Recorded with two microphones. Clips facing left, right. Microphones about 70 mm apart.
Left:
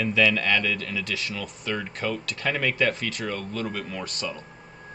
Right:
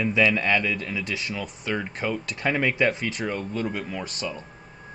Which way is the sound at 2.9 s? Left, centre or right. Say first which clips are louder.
Right 1 dB; centre.